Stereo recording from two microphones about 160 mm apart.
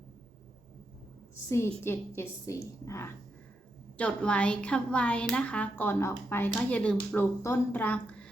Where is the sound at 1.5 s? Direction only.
15° left (ahead or behind).